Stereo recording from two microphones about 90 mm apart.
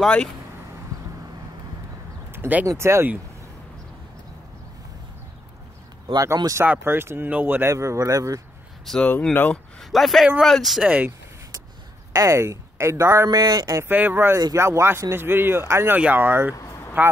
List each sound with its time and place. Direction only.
0.0 s speech: 5° left (ahead or behind)
2.3 s a sound: 20° right (ahead or behind)
2.6 s speech: 35° right (ahead or behind)
6.1 s speech: 40° right (ahead or behind)
6.6 s speech: 20° right (ahead or behind)
7.7 s speech: 35° right (ahead or behind)
8.9 s speech: centre (ahead or behind)
9.3 s speech: 20° left (ahead or behind)
9.8 s speech: centre (ahead or behind)
10.8 s speech: 15° right (ahead or behind)
12.1 s a woman's voice: 35° right (ahead or behind)
13.3 s speech: 45° right (ahead or behind)
13.8 s speech: 20° right (ahead or behind)
16.5 s a sound: 30° left (ahead or behind)